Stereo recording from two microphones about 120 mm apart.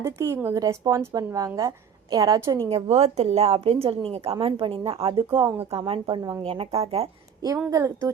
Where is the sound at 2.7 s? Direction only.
65° right (ahead or behind).